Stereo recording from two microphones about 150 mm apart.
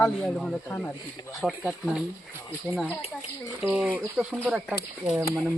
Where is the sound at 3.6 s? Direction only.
10° right (ahead or behind).